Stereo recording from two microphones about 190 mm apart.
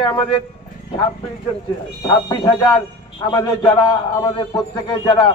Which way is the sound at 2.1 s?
20° left (ahead or behind).